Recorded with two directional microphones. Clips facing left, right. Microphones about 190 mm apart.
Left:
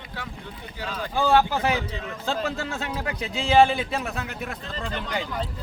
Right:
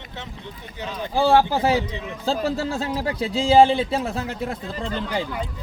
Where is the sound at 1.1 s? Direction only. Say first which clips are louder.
Right 3 dB; 35° right (ahead or behind).